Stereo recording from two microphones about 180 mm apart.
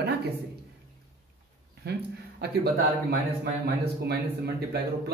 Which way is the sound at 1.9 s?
65° right (ahead or behind).